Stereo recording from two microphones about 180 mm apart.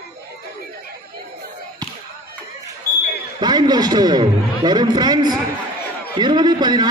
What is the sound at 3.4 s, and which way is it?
A man's voice, 25° right (ahead or behind).